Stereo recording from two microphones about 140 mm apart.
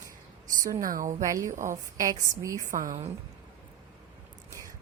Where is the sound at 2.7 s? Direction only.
70° right (ahead or behind).